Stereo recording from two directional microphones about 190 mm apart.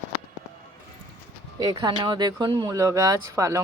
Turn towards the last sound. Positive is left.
turn(degrees=-15)  # may be behind; listen again after turning